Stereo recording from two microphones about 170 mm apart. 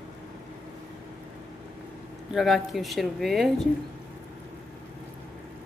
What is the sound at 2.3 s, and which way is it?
Speech, centre (ahead or behind).